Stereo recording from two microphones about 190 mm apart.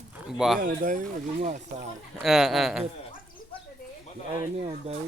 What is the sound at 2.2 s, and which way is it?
Speech, centre (ahead or behind).